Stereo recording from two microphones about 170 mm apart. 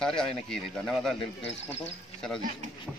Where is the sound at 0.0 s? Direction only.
5° left (ahead or behind).